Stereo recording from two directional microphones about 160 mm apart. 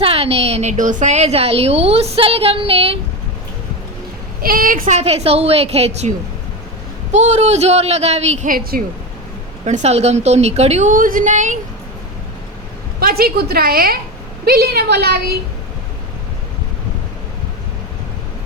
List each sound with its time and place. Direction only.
0.0 s a woman's voice: 40° right (ahead or behind)
4.4 s a woman's voice: 65° right (ahead or behind); by 8.4 s 45° right (ahead or behind)
8.4 s a woman's voice: 65° right (ahead or behind)
9.6 s a woman's voice: 45° right (ahead or behind)
13.0 s a woman's voice: 70° right (ahead or behind); by 15.2 s 85° right